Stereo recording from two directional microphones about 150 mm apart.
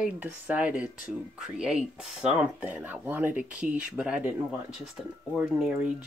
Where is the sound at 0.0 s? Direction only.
10° right (ahead or behind).